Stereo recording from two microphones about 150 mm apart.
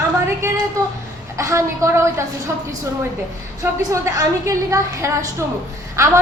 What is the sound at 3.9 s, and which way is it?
A woman's voice, 20° right (ahead or behind).